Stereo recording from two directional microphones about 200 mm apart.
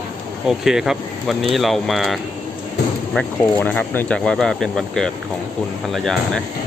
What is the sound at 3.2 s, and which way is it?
Speech, 10° left (ahead or behind).